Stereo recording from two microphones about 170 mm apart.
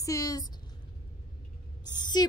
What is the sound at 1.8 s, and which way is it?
Speech, 25° left (ahead or behind).